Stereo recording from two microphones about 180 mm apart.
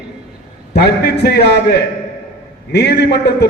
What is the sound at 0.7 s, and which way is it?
A man's voice, 65° left (ahead or behind).